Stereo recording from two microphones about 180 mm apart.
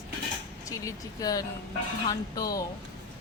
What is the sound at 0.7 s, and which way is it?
A woman's voice, 20° left (ahead or behind).